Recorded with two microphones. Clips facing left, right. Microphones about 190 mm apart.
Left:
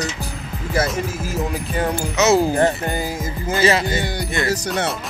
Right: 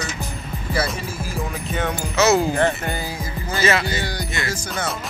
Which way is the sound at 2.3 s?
40° left (ahead or behind).